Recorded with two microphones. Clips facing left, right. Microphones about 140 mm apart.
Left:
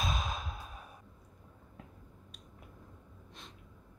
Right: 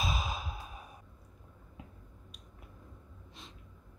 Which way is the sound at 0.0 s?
5° right (ahead or behind).